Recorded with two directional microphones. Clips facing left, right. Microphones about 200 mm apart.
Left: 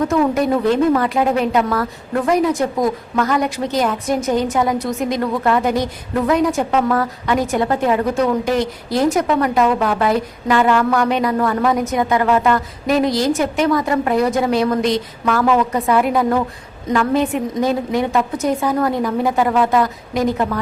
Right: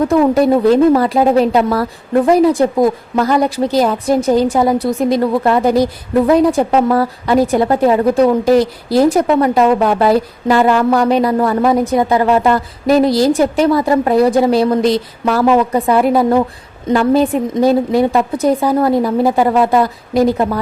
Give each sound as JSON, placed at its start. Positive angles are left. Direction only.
{"t": 0.1, "sound": "a woman's voice", "side_deg": -35}